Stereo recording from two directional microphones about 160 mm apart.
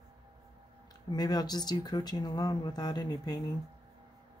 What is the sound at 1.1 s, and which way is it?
Speech, 25° left (ahead or behind).